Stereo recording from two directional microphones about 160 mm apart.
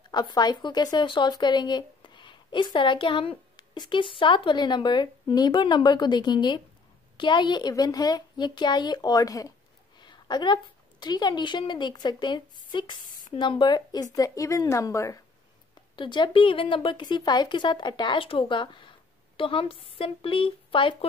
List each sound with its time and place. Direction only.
0.1 s a woman's voice: 25° left (ahead or behind)
16.0 s speech: 30° left (ahead or behind)